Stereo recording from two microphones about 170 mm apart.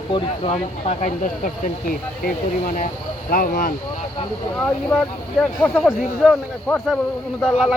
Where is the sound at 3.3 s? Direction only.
65° left (ahead or behind).